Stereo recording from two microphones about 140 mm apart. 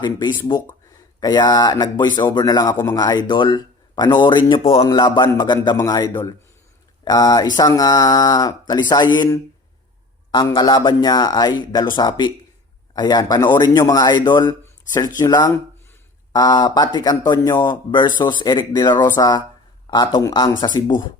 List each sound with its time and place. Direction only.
0.0 s speech: 30° left (ahead or behind)
4.9 s speech: 30° left (ahead or behind)
5.2 s speech: 20° left (ahead or behind)